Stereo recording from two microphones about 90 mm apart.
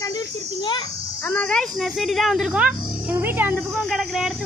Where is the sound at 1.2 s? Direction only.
20° left (ahead or behind).